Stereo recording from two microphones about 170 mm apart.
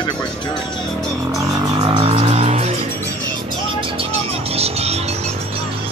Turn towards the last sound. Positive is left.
turn(degrees=-40)  # may be behind; listen again after turning